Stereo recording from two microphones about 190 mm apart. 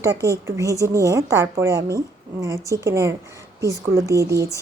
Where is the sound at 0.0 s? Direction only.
15° right (ahead or behind).